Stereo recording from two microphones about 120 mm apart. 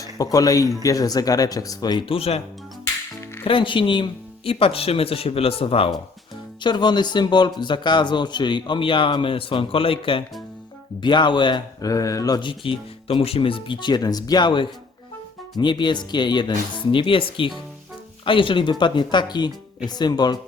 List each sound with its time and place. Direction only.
0.0 s a man's voice: 30° left (ahead or behind); by 2.4 s 55° left (ahead or behind)
3.4 s speech: 45° left (ahead or behind)
6.6 s a man's voice: 40° left (ahead or behind)
11.9 s a man's voice: 30° left (ahead or behind)